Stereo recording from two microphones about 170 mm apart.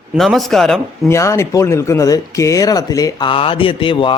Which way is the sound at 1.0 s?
15° left (ahead or behind).